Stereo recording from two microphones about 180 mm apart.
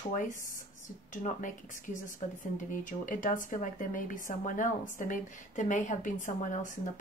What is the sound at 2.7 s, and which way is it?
Speech, 45° left (ahead or behind).